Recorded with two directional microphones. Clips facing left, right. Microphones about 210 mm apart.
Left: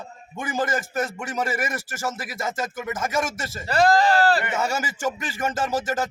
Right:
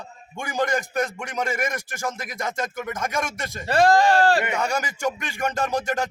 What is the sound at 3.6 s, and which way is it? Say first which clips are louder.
Speech: right 1 dB; 25° right (ahead or behind).